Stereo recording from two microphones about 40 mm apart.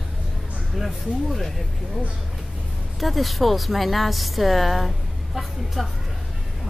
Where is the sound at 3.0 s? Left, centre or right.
Centre.